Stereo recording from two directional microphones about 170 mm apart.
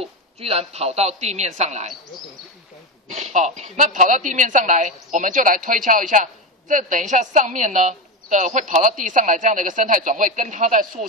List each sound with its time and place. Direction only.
0.0 s a man's voice: 35° right (ahead or behind)
3.1 s a woman's voice: 40° right (ahead or behind)